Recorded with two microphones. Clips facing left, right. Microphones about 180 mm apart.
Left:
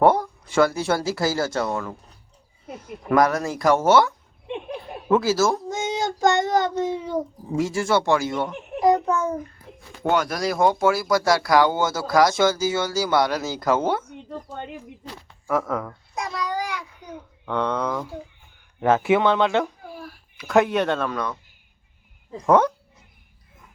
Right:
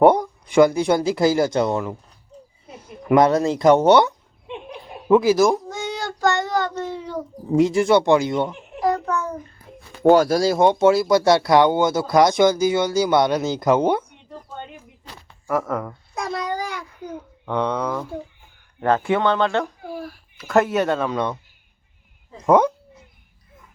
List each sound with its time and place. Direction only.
0.0 s speech: 15° right (ahead or behind)
3.1 s speech: 25° right (ahead or behind)
5.6 s child singing: 20° left (ahead or behind)
7.5 s speech: 20° right (ahead or behind)
8.8 s a sound: 20° left (ahead or behind)
10.0 s speech: 35° right (ahead or behind); by 14.1 s 15° right (ahead or behind)
15.4 s speech: 5° right (ahead or behind)
16.1 s a sound: 55° right (ahead or behind)
17.4 s speech: 10° right (ahead or behind)
18.8 s speech: 5° left (ahead or behind)
22.4 s speech: 10° right (ahead or behind)